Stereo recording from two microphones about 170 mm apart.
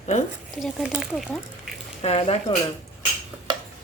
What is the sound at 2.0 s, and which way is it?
Speech, 35° left (ahead or behind).